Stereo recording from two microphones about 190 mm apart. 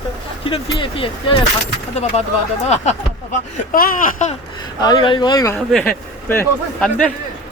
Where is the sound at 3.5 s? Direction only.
45° left (ahead or behind).